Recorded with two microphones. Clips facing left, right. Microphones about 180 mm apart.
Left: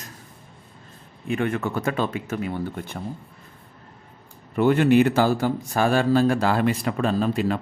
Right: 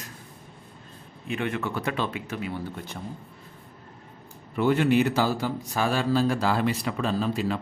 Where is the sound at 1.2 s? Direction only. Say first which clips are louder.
Left 4 dB; 45° left (ahead or behind).